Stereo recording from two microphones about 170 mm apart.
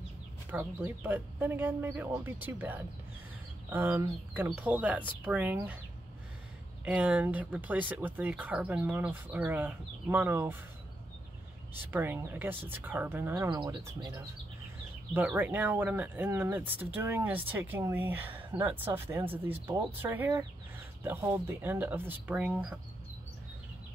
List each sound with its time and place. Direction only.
0.5 s speech: 10° right (ahead or behind)
6.8 s speech: 10° right (ahead or behind)
11.8 s speech: 10° right (ahead or behind)
13.5 s speech: 25° right (ahead or behind)
15.1 s speech: 10° right (ahead or behind)